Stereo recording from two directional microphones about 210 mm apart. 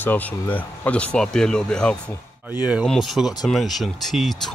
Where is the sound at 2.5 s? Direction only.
5° right (ahead or behind).